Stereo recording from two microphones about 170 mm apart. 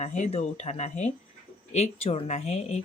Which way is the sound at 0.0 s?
45° left (ahead or behind).